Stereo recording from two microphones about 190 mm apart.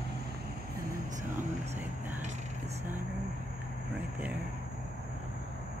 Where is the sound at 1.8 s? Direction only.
10° right (ahead or behind).